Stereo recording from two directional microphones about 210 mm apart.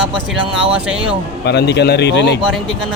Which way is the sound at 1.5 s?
55° left (ahead or behind).